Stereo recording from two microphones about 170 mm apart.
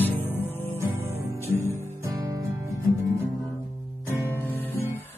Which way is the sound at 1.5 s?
15° left (ahead or behind).